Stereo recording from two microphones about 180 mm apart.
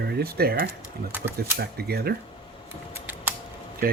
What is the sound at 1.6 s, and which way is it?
Speech, 60° right (ahead or behind).